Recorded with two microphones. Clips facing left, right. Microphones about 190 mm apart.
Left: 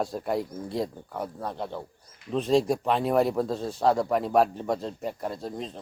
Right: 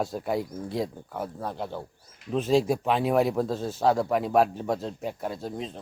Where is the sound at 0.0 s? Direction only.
Centre (ahead or behind).